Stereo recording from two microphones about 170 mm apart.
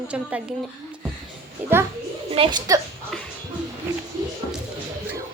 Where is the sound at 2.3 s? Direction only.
30° right (ahead or behind).